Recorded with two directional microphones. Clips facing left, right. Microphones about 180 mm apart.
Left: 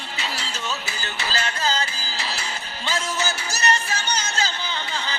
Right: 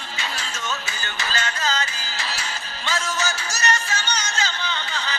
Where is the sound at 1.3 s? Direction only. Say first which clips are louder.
Left 1 dB; 30° left (ahead or behind).